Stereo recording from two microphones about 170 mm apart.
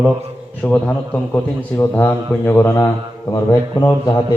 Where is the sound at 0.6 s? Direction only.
10° left (ahead or behind).